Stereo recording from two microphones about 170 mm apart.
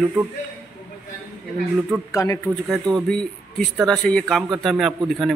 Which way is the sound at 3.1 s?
5° left (ahead or behind).